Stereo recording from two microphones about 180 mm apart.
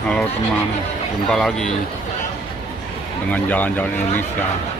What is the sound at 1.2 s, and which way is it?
Speech, 5° left (ahead or behind).